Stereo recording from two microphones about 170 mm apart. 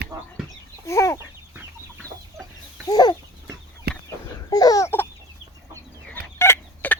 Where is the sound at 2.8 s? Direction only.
25° left (ahead or behind).